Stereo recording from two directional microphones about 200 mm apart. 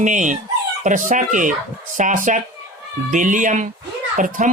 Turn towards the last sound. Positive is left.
turn(degrees=-40)  # may be behind; listen again after turning